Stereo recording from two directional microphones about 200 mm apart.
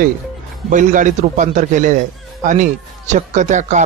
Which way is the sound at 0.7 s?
40° right (ahead or behind).